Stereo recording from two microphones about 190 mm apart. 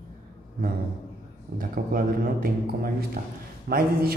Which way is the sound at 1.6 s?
50° right (ahead or behind).